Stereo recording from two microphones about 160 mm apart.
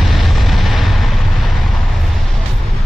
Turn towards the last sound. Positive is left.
turn(degrees=0)  # may be behind; listen again after turning